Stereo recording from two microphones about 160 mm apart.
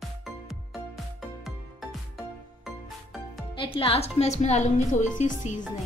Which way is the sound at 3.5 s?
35° left (ahead or behind).